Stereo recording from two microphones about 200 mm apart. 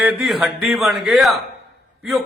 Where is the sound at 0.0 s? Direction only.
Centre (ahead or behind).